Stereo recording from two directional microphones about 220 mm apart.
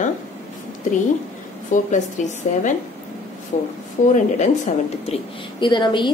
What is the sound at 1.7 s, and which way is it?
Speech, 35° left (ahead or behind).